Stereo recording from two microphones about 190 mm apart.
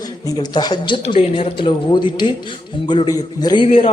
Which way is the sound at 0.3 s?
20° left (ahead or behind).